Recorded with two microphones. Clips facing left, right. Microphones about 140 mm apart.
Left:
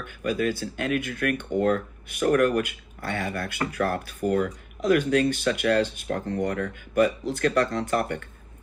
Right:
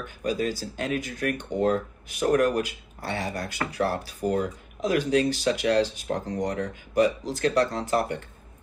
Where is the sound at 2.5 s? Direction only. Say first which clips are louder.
Left 2 dB; 50° left (ahead or behind).